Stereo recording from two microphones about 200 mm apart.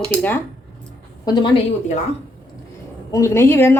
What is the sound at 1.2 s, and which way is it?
Speech, 20° left (ahead or behind).